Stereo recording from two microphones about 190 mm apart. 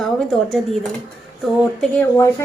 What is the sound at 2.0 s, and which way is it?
Speech, 15° left (ahead or behind).